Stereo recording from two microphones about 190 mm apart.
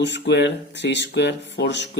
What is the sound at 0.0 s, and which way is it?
Speech, 65° left (ahead or behind).